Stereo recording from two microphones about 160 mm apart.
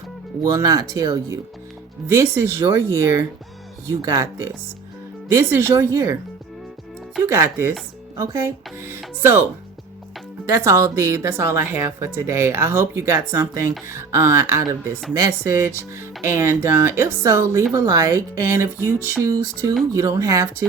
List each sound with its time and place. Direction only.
0.4 s speech: 20° right (ahead or behind)
7.3 s speech: 15° right (ahead or behind)
10.4 s speech: 15° right (ahead or behind)